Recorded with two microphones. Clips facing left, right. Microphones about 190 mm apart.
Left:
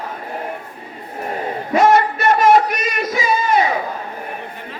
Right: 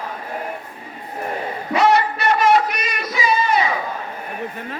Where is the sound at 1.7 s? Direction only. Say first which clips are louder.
Left 3 dB; 50° left (ahead or behind).